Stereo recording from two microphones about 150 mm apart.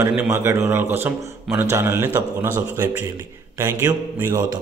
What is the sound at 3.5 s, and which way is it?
Speech, 15° right (ahead or behind).